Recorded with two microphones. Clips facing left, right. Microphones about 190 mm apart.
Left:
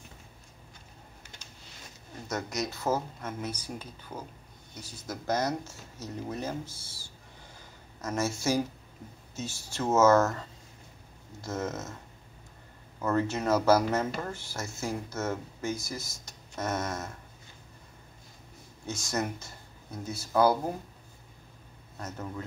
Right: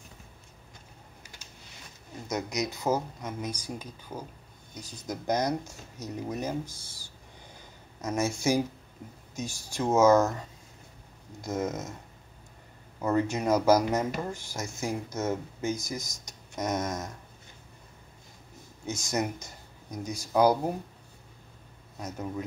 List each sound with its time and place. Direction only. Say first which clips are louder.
2.2 s speech: right 2 dB; 15° right (ahead or behind)
11.4 s speech: right 3 dB; 15° right (ahead or behind)
13.0 s speech: right 1 dB; 15° right (ahead or behind)
18.9 s speech: right 2 dB; 20° right (ahead or behind)
21.9 s speech: right 3 dB; 15° right (ahead or behind)